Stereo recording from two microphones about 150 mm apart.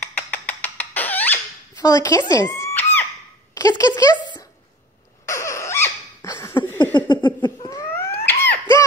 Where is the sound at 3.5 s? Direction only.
20° left (ahead or behind).